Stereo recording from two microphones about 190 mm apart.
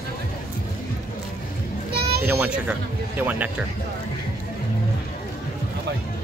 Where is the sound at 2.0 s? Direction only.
55° right (ahead or behind).